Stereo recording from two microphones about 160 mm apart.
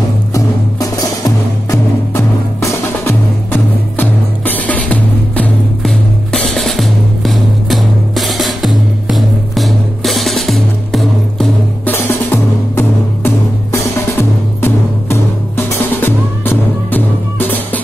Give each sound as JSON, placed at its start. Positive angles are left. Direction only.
{"t": 0.3, "sound": "music", "side_deg": 20}